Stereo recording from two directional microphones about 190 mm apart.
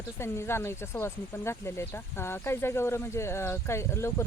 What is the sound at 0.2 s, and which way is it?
Speech, 15° left (ahead or behind).